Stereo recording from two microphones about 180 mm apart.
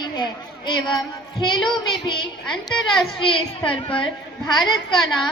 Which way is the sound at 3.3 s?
30° left (ahead or behind).